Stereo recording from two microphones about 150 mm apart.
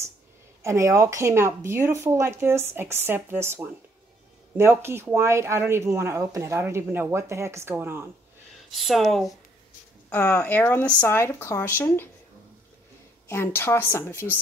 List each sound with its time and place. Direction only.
0.6 s speech: 20° right (ahead or behind)
8.7 s speech: centre (ahead or behind)
10.0 s speech: 15° left (ahead or behind)
13.3 s speech: 15° left (ahead or behind)